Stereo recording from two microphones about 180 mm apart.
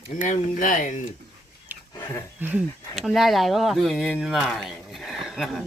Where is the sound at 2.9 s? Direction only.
Centre (ahead or behind).